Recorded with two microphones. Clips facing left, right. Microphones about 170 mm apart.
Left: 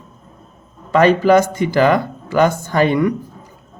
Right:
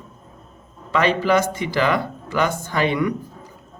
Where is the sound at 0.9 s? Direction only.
45° left (ahead or behind).